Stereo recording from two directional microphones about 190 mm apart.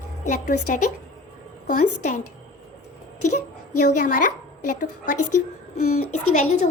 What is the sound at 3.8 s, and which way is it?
Speech, 45° left (ahead or behind).